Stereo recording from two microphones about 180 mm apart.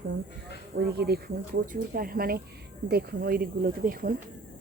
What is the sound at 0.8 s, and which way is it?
Speech, 60° right (ahead or behind).